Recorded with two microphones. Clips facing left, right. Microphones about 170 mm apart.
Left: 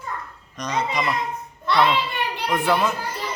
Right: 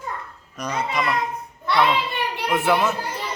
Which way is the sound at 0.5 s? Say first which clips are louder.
Left 1 dB; 10° right (ahead or behind).